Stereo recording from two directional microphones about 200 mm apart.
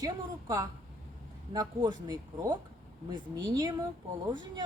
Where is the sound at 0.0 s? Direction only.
20° right (ahead or behind).